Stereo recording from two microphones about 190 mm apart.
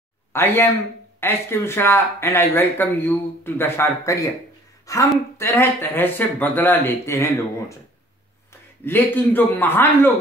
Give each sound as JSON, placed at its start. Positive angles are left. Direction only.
{"t": 0.3, "sound": "a woman's voice", "side_deg": 10}
{"t": 8.8, "sound": "speech", "side_deg": 10}